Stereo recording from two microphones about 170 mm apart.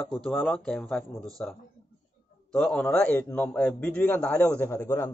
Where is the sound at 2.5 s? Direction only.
5° left (ahead or behind).